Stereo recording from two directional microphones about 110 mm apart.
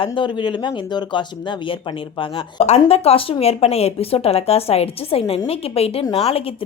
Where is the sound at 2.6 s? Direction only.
70° left (ahead or behind).